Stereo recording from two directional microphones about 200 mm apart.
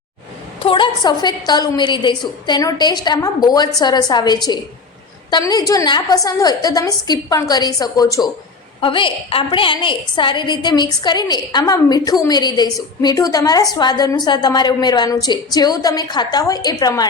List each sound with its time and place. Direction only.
0.6 s a woman's voice: 25° left (ahead or behind)